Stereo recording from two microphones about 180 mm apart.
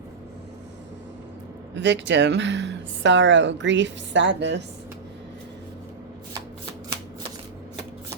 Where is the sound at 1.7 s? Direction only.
75° right (ahead or behind).